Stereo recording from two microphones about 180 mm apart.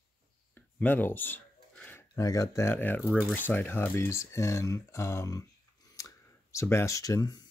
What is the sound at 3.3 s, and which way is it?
Speech, 10° left (ahead or behind).